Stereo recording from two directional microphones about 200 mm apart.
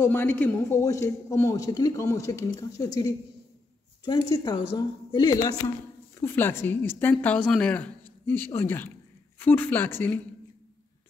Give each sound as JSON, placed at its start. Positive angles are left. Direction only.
{"t": 0.0, "sound": "a man's voice", "side_deg": 10}